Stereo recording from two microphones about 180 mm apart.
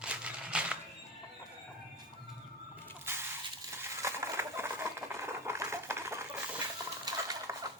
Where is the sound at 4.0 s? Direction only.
15° right (ahead or behind).